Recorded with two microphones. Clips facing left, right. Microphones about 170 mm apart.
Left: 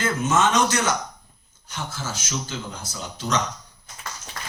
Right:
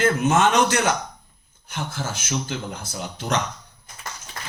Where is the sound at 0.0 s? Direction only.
55° right (ahead or behind).